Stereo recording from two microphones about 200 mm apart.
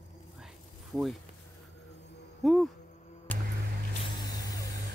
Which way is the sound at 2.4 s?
Centre (ahead or behind).